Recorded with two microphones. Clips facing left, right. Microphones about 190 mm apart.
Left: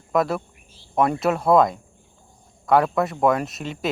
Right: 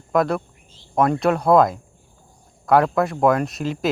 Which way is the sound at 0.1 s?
Centre (ahead or behind).